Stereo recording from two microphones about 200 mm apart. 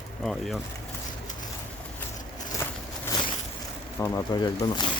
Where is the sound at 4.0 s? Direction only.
15° left (ahead or behind).